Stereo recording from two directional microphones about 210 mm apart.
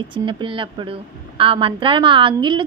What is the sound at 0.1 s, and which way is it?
A woman's voice, 25° right (ahead or behind).